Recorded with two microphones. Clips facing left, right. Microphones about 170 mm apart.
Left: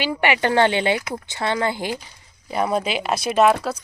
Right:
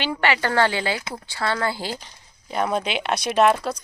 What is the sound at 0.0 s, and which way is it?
Speech, 15° left (ahead or behind).